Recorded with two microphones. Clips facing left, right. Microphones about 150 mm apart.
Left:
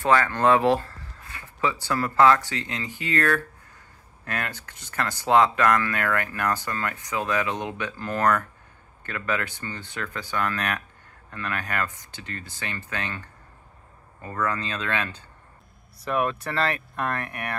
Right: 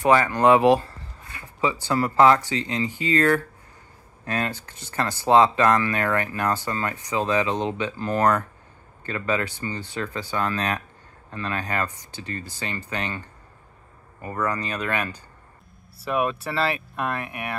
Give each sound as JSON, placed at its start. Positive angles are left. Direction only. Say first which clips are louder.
{"t": 0.0, "sound": "speech", "louder": "right 3 dB", "side_deg": -10}